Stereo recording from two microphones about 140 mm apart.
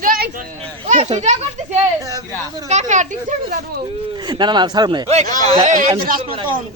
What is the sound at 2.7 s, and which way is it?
Speech, 60° right (ahead or behind).